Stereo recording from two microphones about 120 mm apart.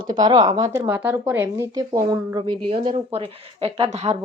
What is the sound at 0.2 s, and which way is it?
Speech, 30° right (ahead or behind).